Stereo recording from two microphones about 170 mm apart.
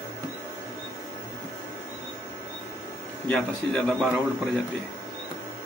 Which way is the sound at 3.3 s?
5° left (ahead or behind).